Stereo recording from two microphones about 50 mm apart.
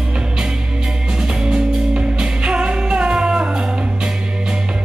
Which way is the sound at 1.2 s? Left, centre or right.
Centre.